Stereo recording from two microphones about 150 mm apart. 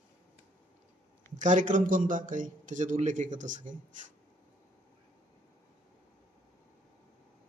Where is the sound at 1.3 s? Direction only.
55° right (ahead or behind).